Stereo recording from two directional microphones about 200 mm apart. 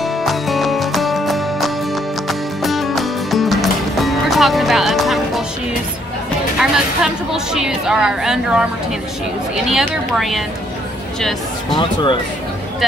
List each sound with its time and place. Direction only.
0.0 s music: centre (ahead or behind)
6.6 s a woman's voice: 5° right (ahead or behind)
9.7 s a woman's voice: centre (ahead or behind)
11.8 s speech: 25° left (ahead or behind)